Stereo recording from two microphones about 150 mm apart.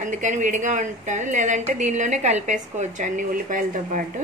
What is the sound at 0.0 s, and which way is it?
A woman's voice, 55° right (ahead or behind).